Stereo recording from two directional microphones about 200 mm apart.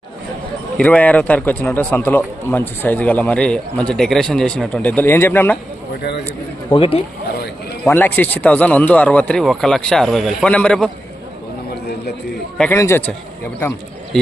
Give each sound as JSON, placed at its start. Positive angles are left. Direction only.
{"t": 0.8, "sound": "a man's voice", "side_deg": 5}
{"t": 6.7, "sound": "speech", "side_deg": 25}
{"t": 7.9, "sound": "a man's voice", "side_deg": 10}
{"t": 12.5, "sound": "a man's voice", "side_deg": 10}